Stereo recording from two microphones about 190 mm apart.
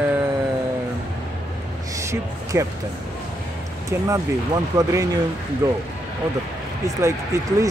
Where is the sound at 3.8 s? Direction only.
15° right (ahead or behind).